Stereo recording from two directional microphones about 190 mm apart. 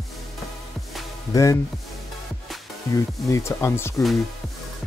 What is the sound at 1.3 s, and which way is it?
Speech, 15° left (ahead or behind).